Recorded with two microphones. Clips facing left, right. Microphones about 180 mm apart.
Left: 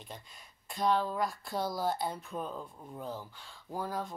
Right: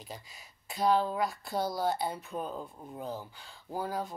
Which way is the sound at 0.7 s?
Centre (ahead or behind).